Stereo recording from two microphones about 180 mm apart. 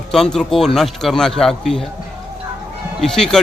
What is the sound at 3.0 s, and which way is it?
Speech, 5° left (ahead or behind).